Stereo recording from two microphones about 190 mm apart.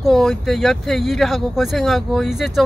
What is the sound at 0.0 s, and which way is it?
Speech, centre (ahead or behind).